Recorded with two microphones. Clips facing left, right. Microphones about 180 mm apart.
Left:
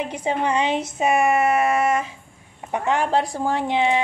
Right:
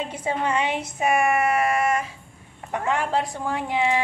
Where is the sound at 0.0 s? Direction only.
15° left (ahead or behind).